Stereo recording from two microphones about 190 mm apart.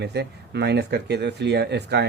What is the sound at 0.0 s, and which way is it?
Speech, 60° right (ahead or behind).